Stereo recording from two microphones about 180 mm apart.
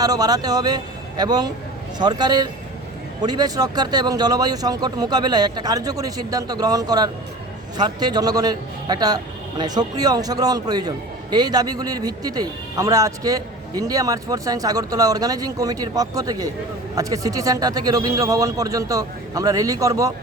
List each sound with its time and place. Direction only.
0.0 s a man's voice: 20° right (ahead or behind)